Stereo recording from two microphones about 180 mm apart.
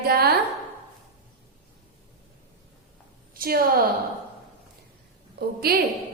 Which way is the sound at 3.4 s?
55° right (ahead or behind).